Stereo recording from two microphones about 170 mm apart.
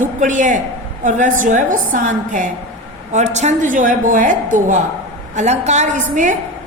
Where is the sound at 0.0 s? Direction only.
50° right (ahead or behind).